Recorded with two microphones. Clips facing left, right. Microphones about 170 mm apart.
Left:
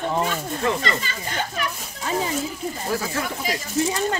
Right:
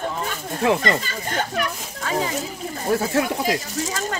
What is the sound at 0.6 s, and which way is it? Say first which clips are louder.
Speech: right 6 dB; 60° right (ahead or behind).